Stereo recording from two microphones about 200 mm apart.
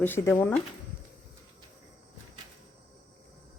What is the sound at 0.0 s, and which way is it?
Speech, 10° left (ahead or behind).